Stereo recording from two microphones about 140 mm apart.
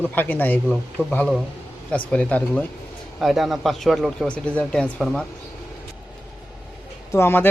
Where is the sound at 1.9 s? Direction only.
10° left (ahead or behind).